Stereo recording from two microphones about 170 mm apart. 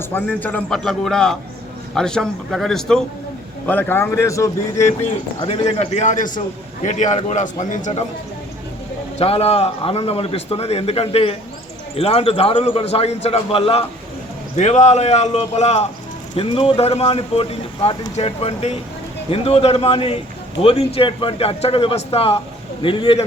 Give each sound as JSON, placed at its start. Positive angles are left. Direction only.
{"t": 0.0, "sound": "a man's voice", "side_deg": 10}
{"t": 5.4, "sound": "a man's voice", "side_deg": 35}
{"t": 9.1, "sound": "speech", "side_deg": 35}